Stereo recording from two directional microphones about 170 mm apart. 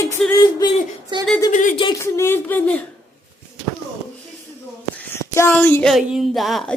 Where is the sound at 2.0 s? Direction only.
15° left (ahead or behind).